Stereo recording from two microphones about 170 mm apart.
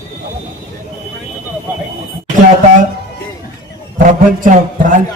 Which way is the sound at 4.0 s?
50° right (ahead or behind).